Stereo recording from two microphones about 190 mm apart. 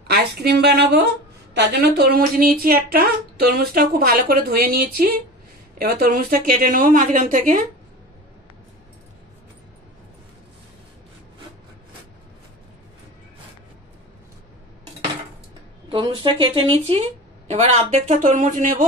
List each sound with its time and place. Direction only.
0.1 s a woman's voice: 55° right (ahead or behind)
15.9 s speech: 25° right (ahead or behind); by 18.9 s 40° right (ahead or behind)